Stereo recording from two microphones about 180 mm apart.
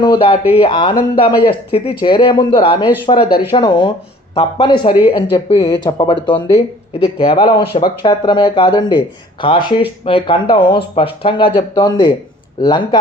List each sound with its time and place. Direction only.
0.0 s speech: 25° left (ahead or behind)